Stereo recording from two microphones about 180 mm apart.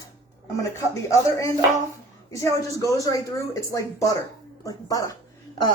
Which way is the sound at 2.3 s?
15° left (ahead or behind).